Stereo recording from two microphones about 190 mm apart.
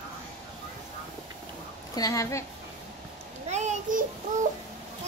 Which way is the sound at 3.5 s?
40° right (ahead or behind).